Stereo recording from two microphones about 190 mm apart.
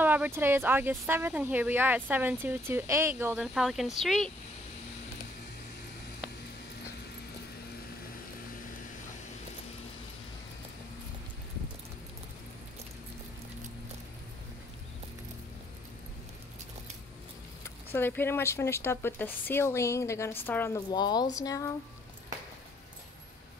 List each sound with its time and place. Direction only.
0.0 s speech: 10° right (ahead or behind)
17.6 s speech: 10° left (ahead or behind)